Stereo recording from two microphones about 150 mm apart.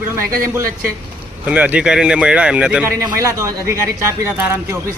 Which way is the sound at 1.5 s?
10° right (ahead or behind).